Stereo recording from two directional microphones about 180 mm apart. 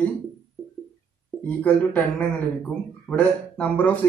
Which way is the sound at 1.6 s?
5° left (ahead or behind).